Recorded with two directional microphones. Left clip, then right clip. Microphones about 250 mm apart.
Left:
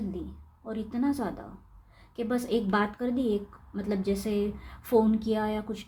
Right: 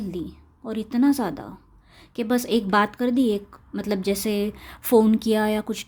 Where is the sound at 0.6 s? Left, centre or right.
Right.